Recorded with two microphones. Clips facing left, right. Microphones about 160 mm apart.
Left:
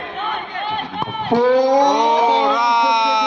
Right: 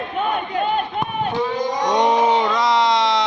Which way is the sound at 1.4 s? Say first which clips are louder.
Left 11 dB; 90° left.